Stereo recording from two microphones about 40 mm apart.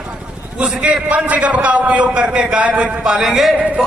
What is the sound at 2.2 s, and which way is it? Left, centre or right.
A man's voice, right.